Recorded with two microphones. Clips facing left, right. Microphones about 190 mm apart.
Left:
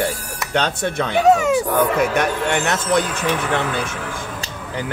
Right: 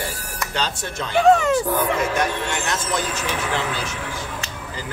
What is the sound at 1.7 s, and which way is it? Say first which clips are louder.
Speech: left 4 dB; 60° left (ahead or behind).